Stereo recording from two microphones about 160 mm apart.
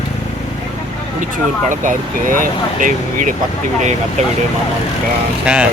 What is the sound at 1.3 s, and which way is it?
Speech, 55° right (ahead or behind).